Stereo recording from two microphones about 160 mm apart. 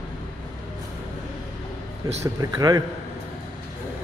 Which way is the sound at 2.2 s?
20° right (ahead or behind).